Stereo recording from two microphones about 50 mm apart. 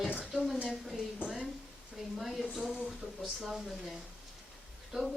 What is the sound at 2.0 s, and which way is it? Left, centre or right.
A woman's voice, centre.